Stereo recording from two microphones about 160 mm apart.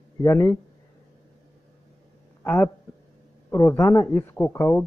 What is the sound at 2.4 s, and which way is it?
Speech, 5° left (ahead or behind).